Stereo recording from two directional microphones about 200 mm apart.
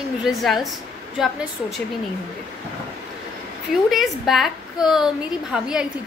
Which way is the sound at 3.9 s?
Centre (ahead or behind).